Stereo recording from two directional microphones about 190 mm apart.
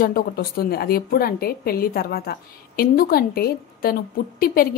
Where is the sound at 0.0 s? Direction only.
50° left (ahead or behind).